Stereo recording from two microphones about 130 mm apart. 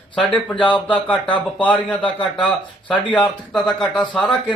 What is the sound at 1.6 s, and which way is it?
Speech, 10° left (ahead or behind).